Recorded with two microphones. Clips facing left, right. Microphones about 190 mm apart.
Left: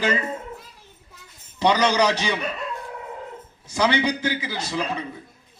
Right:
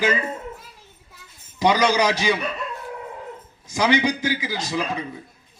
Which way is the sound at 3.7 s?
10° right (ahead or behind).